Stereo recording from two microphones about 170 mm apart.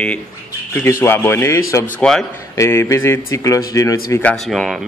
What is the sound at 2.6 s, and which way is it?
Speech, 15° left (ahead or behind).